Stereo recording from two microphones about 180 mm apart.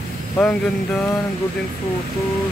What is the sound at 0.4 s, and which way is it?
Speech, 5° left (ahead or behind).